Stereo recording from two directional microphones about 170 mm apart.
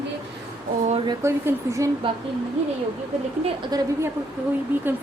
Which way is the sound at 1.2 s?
15° right (ahead or behind).